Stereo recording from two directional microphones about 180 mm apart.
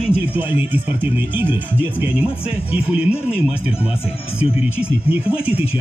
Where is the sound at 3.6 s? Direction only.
30° left (ahead or behind).